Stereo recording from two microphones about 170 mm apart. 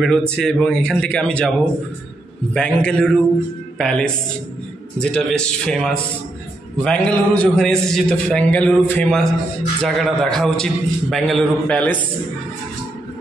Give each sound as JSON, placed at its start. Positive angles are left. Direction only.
{"t": 0.0, "sound": "a man's voice", "side_deg": 5}
{"t": 2.5, "sound": "a man's voice", "side_deg": 5}